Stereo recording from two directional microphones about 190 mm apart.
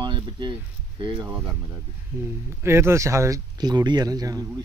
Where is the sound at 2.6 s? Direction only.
15° right (ahead or behind).